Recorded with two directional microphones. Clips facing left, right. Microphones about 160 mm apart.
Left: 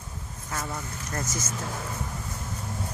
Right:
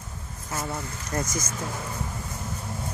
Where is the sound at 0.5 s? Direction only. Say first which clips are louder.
Right 2 dB; 10° right (ahead or behind).